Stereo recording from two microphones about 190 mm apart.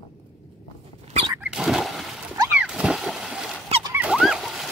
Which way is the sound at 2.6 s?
5° right (ahead or behind).